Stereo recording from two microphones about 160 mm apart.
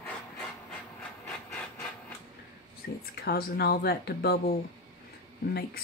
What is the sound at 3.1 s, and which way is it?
Speech, 85° left.